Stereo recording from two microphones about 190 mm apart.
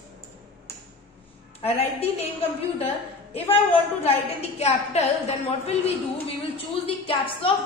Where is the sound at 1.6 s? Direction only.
30° left (ahead or behind).